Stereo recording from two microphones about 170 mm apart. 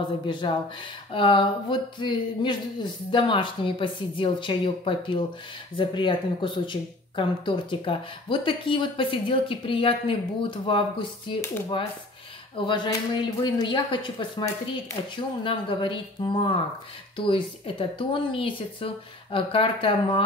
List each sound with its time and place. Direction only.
0.3 s speech: 30° left (ahead or behind)